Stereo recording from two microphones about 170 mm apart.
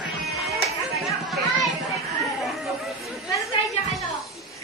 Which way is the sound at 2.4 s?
Centre (ahead or behind).